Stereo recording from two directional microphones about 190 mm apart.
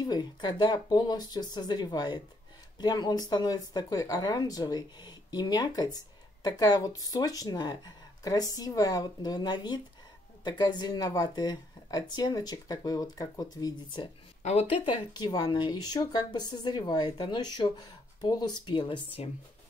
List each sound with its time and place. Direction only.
0.0 s speech: 20° left (ahead or behind)
14.4 s speech: 35° left (ahead or behind)